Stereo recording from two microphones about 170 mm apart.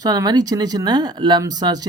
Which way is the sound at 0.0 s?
20° right (ahead or behind).